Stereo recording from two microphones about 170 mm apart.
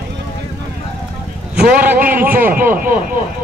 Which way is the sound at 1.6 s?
55° right (ahead or behind).